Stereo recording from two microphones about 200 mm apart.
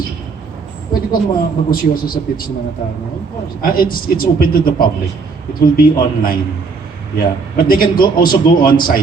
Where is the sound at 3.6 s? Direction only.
45° left (ahead or behind).